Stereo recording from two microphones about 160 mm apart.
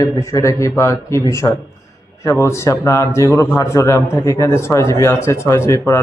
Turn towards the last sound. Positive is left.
turn(degrees=20)  # may be behind; listen again after turning